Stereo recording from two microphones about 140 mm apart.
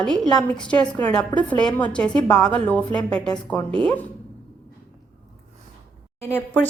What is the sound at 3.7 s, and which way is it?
Speech, 35° right (ahead or behind).